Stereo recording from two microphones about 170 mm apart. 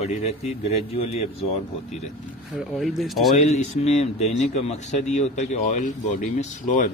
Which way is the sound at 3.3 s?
40° left (ahead or behind).